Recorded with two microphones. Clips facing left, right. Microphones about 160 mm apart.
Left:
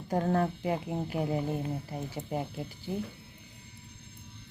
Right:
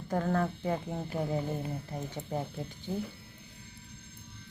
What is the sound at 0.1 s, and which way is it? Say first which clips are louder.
Speech: left 2 dB; 20° left (ahead or behind).